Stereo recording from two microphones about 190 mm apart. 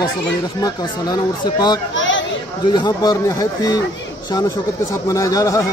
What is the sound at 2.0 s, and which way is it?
Chatter, 75° left (ahead or behind).